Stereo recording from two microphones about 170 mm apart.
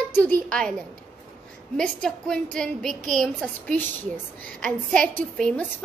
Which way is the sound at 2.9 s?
50° right (ahead or behind).